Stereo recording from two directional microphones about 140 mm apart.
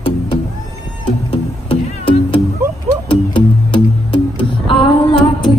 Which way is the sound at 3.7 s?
35° left (ahead or behind).